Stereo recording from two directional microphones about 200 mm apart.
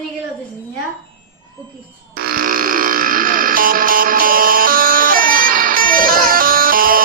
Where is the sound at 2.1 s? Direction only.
45° right (ahead or behind).